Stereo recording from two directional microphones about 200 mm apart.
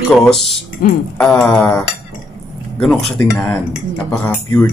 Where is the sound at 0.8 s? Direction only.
45° left (ahead or behind).